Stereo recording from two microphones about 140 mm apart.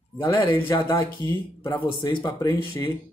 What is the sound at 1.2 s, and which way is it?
Speech, 35° left (ahead or behind).